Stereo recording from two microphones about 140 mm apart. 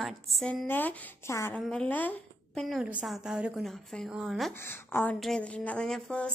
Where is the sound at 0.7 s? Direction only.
15° left (ahead or behind).